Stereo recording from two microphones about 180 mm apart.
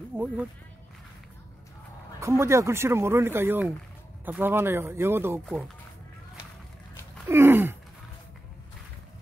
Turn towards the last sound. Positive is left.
turn(degrees=-10)  # may be behind; listen again after turning